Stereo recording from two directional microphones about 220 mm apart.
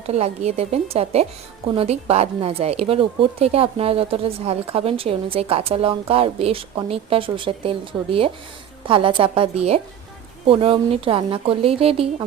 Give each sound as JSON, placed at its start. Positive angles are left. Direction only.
{"t": 0.1, "sound": "speech", "side_deg": -30}